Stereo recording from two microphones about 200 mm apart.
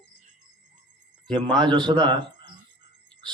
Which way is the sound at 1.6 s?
25° right (ahead or behind).